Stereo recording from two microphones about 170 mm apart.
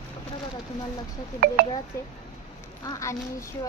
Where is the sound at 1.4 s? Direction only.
65° right (ahead or behind).